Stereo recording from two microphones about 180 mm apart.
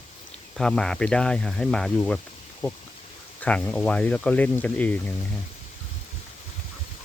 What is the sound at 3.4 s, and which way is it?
Speech, 5° left (ahead or behind).